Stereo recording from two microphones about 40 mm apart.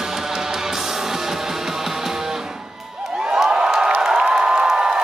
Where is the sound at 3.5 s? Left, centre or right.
Right.